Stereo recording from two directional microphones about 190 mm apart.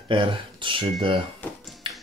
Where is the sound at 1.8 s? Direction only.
25° right (ahead or behind).